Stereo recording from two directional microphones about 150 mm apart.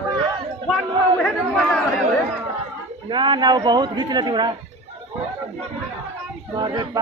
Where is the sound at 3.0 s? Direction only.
30° right (ahead or behind).